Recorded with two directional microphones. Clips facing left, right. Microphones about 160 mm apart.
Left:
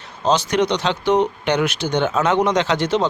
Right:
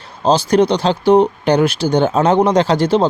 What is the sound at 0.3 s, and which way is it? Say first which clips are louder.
Speech: right 5 dB; 30° right (ahead or behind).